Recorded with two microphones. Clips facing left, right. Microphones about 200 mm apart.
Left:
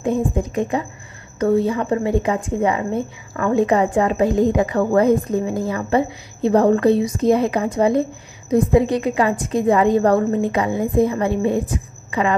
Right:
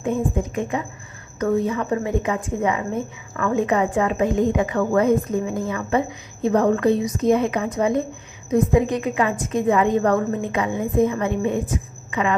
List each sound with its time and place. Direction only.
0.0 s a woman's voice: 35° left (ahead or behind)